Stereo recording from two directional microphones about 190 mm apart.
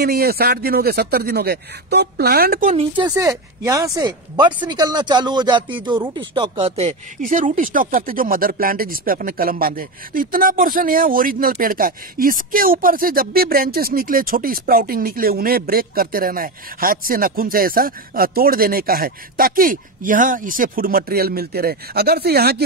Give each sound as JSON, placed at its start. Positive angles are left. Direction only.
{"t": 0.0, "sound": "speech", "side_deg": -55}
{"t": 2.7, "sound": "speech", "side_deg": -25}